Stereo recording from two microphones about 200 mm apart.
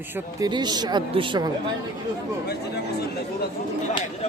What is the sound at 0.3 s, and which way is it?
Speech, 20° right (ahead or behind).